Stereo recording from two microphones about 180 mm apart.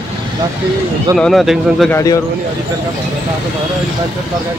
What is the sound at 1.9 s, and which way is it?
Speech, 20° left (ahead or behind).